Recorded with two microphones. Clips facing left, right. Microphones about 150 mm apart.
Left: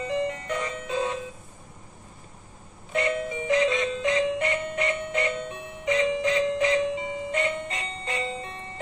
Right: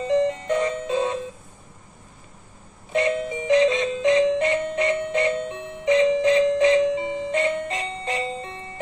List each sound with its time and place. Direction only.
0.0 s music: 25° right (ahead or behind)
2.9 s music: 25° right (ahead or behind)